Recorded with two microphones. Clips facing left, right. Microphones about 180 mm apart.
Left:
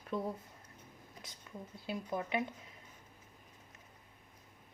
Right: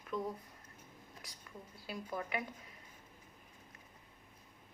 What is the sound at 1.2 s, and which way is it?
Speech, 25° left (ahead or behind).